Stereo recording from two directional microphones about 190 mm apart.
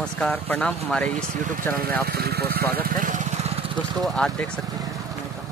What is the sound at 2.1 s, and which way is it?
Speech, 55° right (ahead or behind).